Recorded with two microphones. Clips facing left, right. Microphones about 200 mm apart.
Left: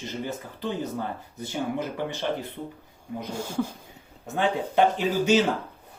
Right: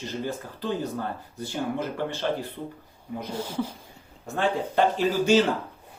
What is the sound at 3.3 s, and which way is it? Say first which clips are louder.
Speech: left 1 dB; 45° left (ahead or behind).